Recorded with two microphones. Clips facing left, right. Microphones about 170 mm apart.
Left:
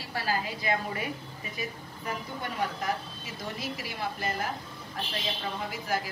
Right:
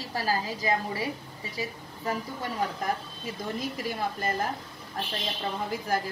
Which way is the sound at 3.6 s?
45° right (ahead or behind).